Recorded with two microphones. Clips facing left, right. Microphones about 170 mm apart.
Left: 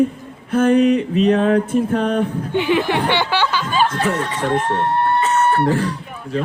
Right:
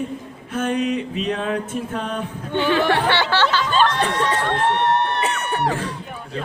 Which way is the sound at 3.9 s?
80° right.